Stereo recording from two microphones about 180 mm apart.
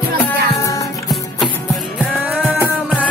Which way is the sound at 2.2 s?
10° right (ahead or behind).